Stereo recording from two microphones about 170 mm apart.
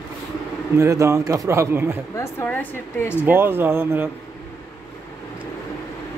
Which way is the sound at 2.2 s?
10° left (ahead or behind).